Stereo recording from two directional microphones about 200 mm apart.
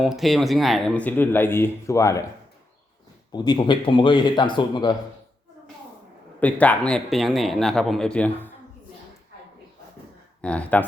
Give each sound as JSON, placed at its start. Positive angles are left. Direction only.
{"t": 0.0, "sound": "speech", "side_deg": 0}
{"t": 3.3, "sound": "speech", "side_deg": 20}
{"t": 6.4, "sound": "speech", "side_deg": 5}
{"t": 10.4, "sound": "speech", "side_deg": 5}